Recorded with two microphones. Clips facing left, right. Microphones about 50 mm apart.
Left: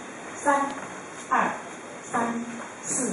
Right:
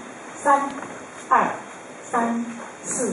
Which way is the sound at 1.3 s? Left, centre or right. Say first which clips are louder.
Right 5 dB; centre.